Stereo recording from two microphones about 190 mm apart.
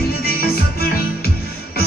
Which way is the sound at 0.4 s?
55° left (ahead or behind).